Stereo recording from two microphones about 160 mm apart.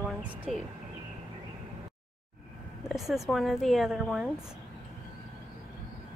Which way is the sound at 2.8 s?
Centre (ahead or behind).